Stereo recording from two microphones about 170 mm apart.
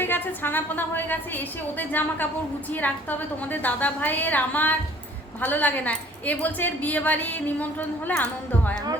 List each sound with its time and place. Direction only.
0.0 s a woman's voice: 10° left (ahead or behind)